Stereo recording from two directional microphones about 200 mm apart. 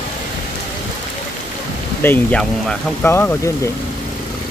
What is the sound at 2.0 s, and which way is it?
Speech, 10° left (ahead or behind).